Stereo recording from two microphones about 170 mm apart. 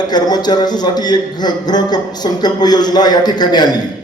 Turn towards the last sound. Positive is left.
turn(degrees=25)  # may be behind; listen again after turning